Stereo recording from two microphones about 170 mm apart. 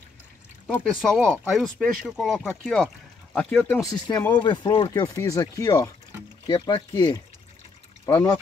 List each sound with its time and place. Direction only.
0.7 s speech: 5° left (ahead or behind)
3.8 s speech: 20° left (ahead or behind)